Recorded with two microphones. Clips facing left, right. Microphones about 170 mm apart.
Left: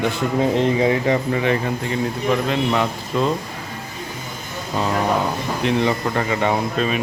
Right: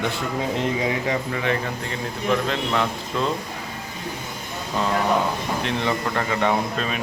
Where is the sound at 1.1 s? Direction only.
25° left (ahead or behind).